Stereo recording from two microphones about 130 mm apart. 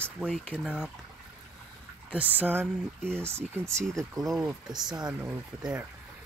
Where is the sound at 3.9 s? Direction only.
Centre (ahead or behind).